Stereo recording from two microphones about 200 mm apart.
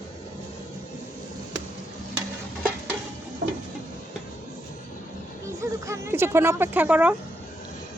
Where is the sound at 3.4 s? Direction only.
55° right (ahead or behind).